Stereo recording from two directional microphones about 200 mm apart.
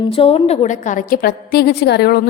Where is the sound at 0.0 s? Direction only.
25° left (ahead or behind).